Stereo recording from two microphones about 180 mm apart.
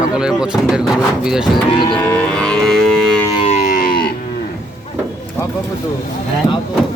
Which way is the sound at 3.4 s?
40° left (ahead or behind).